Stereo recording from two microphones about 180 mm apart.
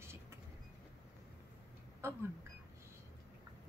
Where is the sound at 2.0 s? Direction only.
15° right (ahead or behind).